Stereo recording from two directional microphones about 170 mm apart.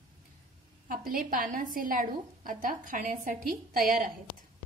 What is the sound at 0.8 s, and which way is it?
A woman's voice, 55° right (ahead or behind).